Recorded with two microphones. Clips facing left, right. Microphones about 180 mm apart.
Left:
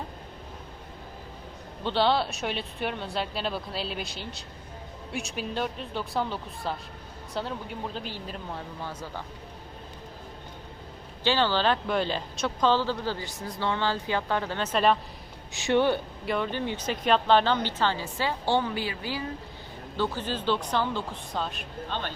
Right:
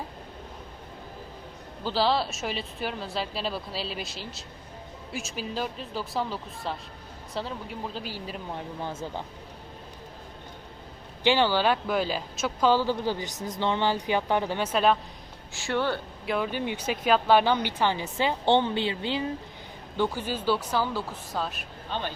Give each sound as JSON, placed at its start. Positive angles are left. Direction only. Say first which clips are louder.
{"t": 1.8, "sound": "speech", "louder": "left 1 dB", "side_deg": 0}
{"t": 8.5, "sound": "speech", "louder": "right 3 dB", "side_deg": -20}
{"t": 11.2, "sound": "speech", "louder": "right 2 dB", "side_deg": -15}
{"t": 15.5, "sound": "speech", "louder": "left 4 dB", "side_deg": 20}
{"t": 16.2, "sound": "speech", "louder": "right 2 dB", "side_deg": -5}
{"t": 20.0, "sound": "speech", "louder": "right 1 dB", "side_deg": -10}